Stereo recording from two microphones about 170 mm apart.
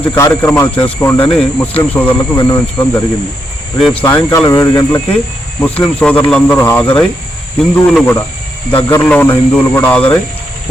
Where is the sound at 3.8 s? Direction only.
Centre (ahead or behind).